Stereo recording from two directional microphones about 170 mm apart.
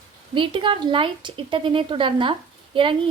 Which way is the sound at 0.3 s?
30° right (ahead or behind).